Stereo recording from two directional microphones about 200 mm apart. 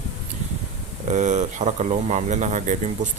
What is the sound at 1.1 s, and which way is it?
Speech, 35° right (ahead or behind).